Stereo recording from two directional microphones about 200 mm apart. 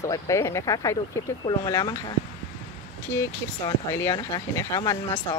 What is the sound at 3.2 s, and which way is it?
Speech, 15° left (ahead or behind).